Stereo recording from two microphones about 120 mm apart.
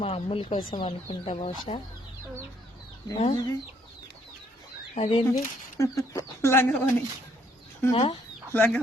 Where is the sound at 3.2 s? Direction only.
55° left (ahead or behind).